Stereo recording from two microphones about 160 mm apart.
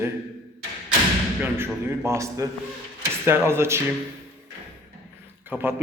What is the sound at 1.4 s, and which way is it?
A man's voice, 15° right (ahead or behind).